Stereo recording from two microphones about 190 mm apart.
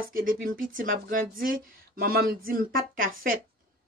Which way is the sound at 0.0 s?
45° right (ahead or behind).